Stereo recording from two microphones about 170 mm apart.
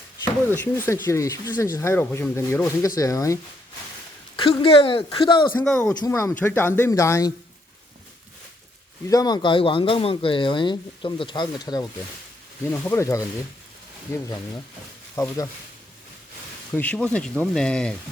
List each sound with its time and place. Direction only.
0.5 s speech: 15° left (ahead or behind)
4.4 s speech: 30° left (ahead or behind)
5.5 s speech: 5° left (ahead or behind)
5.9 s speech: 20° left (ahead or behind)
9.0 s speech: 20° left (ahead or behind)
12.7 s speech: 15° left (ahead or behind)
16.7 s speech: 10° left (ahead or behind)